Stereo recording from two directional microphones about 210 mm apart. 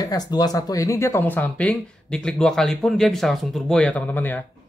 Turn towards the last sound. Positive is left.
turn(degrees=10)  # may be behind; listen again after turning